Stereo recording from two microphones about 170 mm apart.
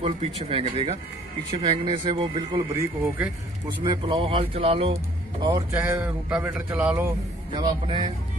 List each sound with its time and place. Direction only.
0.0 s speech: 35° right (ahead or behind)
1.6 s a man's voice: 25° right (ahead or behind)
3.8 s speech: 30° right (ahead or behind)
5.7 s speech: 15° right (ahead or behind)
7.5 s a man's voice: 30° right (ahead or behind)